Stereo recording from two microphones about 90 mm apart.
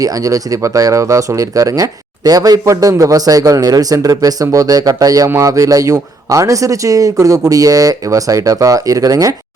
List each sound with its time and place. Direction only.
0.0 s speech: 40° right (ahead or behind)